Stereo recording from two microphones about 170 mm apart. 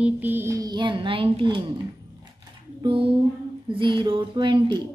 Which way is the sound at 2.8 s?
30° right (ahead or behind).